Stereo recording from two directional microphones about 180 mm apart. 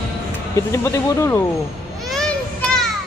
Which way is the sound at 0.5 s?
15° left (ahead or behind).